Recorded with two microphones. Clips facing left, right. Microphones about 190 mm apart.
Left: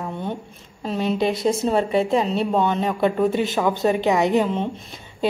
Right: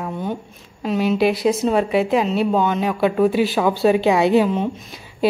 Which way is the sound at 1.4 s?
30° left (ahead or behind).